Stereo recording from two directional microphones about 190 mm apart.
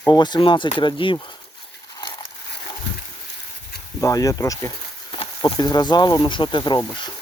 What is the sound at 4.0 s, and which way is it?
Speech, 15° left (ahead or behind).